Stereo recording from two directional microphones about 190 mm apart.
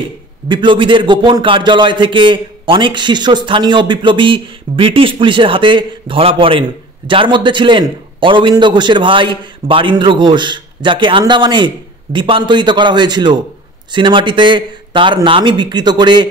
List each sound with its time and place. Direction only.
0.5 s a man's voice: 25° right (ahead or behind)